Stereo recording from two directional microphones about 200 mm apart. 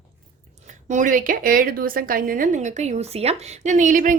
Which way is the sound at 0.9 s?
40° right (ahead or behind).